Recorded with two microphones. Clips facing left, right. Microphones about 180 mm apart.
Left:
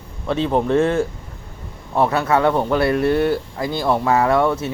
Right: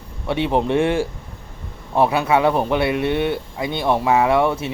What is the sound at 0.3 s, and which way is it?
Speech, 15° right (ahead or behind).